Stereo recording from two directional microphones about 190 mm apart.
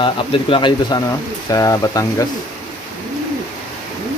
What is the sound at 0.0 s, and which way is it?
Speech, 25° left (ahead or behind).